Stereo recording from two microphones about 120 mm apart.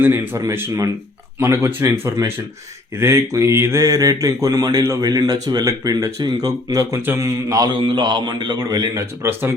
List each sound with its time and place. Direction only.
0.0 s speech: 25° right (ahead or behind)
7.8 s a man's voice: 40° right (ahead or behind); by 9.6 s 25° right (ahead or behind)